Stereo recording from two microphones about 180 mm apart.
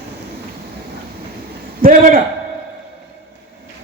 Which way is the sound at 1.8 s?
55° right (ahead or behind).